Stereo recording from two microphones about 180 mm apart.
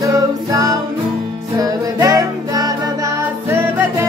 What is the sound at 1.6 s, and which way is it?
Music, 20° right (ahead or behind).